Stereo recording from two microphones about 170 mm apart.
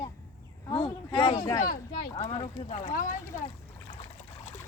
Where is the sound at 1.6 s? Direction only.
60° left (ahead or behind).